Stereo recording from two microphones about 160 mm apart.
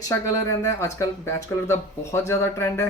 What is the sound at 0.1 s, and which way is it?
Speech, 20° left (ahead or behind).